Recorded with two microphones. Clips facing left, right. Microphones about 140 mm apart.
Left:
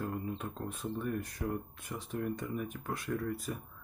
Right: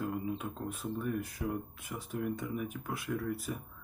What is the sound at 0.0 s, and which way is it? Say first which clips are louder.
Speech: right 2 dB; 5° right (ahead or behind).